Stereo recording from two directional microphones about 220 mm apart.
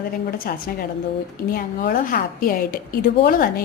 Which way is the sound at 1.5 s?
40° left (ahead or behind).